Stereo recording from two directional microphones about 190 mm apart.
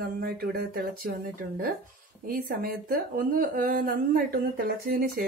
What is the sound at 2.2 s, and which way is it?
A woman's voice, 50° right (ahead or behind).